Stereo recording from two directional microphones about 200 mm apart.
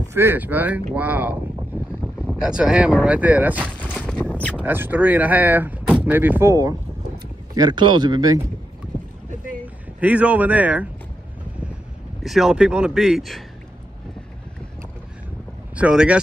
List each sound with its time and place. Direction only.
0.1 s speech: 10° right (ahead or behind)
4.0 s a sound: 5° left (ahead or behind)
4.6 s speech: 10° right (ahead or behind)
9.9 s speech: 5° right (ahead or behind)
12.2 s speech: centre (ahead or behind)
15.7 s speech: 5° right (ahead or behind)